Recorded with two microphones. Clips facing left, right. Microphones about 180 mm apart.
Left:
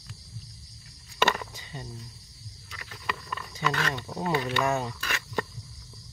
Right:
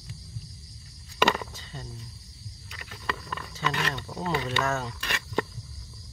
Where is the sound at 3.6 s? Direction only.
15° left (ahead or behind).